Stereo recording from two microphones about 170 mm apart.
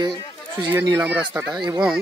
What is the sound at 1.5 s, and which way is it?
Speech, 25° right (ahead or behind).